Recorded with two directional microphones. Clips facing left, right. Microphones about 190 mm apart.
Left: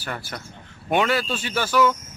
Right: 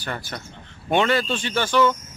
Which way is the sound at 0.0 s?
5° left (ahead or behind).